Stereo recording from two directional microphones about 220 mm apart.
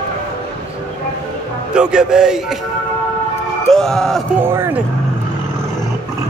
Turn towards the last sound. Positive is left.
turn(degrees=-10)  # may be behind; listen again after turning